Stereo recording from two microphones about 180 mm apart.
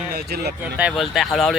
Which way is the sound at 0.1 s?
65° right (ahead or behind).